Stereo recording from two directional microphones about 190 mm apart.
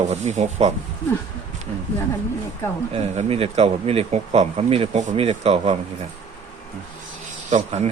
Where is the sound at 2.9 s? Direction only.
35° right (ahead or behind).